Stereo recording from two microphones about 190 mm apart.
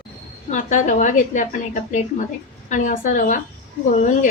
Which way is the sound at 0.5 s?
40° left (ahead or behind).